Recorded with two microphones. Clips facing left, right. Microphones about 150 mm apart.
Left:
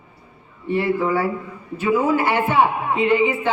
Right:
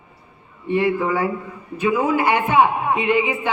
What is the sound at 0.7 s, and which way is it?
A man's voice, 15° right (ahead or behind).